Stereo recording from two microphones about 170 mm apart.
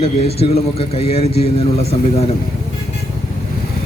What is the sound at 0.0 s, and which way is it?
A man's voice, 35° left (ahead or behind).